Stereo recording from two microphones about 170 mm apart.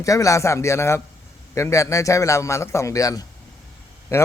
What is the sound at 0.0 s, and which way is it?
A man's voice, 20° left (ahead or behind).